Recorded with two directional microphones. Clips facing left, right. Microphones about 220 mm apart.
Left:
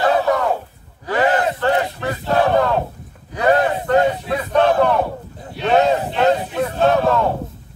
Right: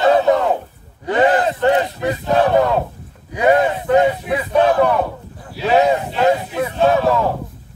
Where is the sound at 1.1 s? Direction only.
20° right (ahead or behind).